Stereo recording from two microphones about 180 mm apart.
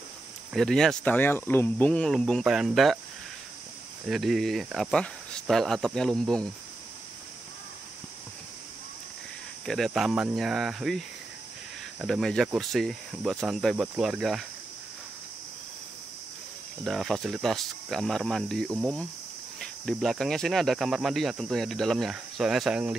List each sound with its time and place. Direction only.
0.5 s speech: centre (ahead or behind)
4.1 s speech: centre (ahead or behind)
9.7 s speech: centre (ahead or behind)
16.8 s speech: centre (ahead or behind)